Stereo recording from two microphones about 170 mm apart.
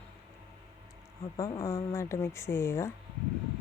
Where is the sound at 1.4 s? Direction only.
15° left (ahead or behind).